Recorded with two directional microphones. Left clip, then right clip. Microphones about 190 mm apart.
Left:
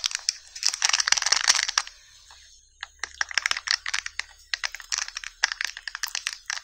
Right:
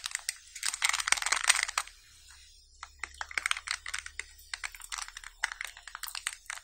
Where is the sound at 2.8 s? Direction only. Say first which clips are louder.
Left 10 dB; 20° left (ahead or behind).